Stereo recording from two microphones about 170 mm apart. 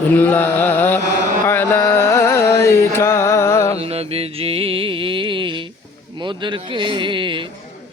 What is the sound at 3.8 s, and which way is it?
Music, 35° right (ahead or behind).